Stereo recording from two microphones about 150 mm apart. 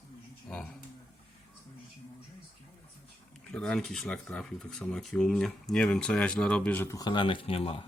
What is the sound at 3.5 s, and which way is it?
Speech, 5° left (ahead or behind).